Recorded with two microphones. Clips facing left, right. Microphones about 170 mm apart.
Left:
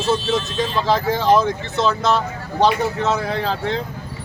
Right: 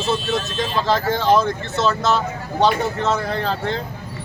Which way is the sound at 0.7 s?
Centre (ahead or behind).